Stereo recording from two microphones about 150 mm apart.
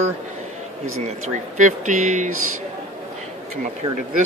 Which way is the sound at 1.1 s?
55° right (ahead or behind).